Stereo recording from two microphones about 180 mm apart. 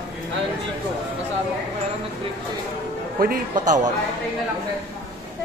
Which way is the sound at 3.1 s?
55° right (ahead or behind).